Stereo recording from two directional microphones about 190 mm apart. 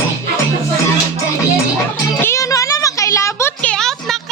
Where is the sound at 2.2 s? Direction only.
15° left (ahead or behind).